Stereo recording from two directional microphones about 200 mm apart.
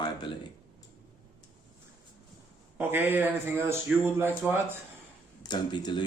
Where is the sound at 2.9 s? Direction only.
10° right (ahead or behind).